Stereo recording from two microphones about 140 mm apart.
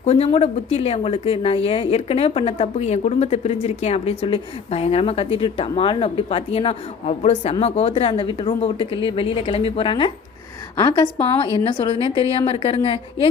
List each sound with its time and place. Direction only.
0.0 s speech: 45° left (ahead or behind)
10.8 s a woman's voice: 25° left (ahead or behind)
11.5 s speech: 35° left (ahead or behind)